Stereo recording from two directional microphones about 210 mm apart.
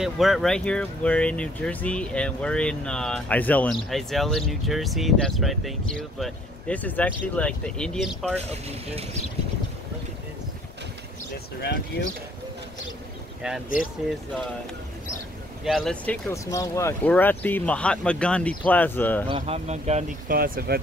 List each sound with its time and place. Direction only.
0.0 s speech: centre (ahead or behind)
11.6 s speech: 50° left (ahead or behind)
15.6 s speech: centre (ahead or behind)
19.2 s speech: 25° right (ahead or behind); by 20.8 s 45° right (ahead or behind)